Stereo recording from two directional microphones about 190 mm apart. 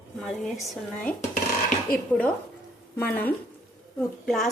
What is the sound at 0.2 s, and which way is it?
Speech, centre (ahead or behind).